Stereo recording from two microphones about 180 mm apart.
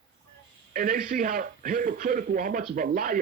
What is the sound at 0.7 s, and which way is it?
A man's voice, 50° right (ahead or behind).